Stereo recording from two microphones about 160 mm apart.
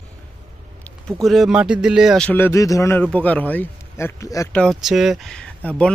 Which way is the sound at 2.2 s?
15° left (ahead or behind).